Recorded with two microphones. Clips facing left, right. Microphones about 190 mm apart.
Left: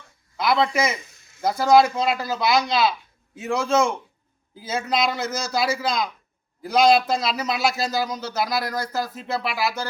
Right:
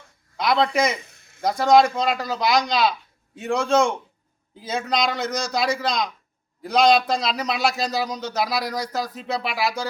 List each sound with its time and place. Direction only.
0.3 s a man's voice: 5° left (ahead or behind)
1.0 s a sound: 60° right (ahead or behind)
1.4 s a man's voice: 5° left (ahead or behind)